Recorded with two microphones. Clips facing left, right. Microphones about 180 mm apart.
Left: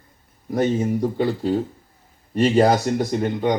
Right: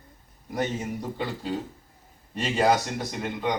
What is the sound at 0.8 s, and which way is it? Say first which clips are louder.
Speech: left 10 dB; 40° left (ahead or behind).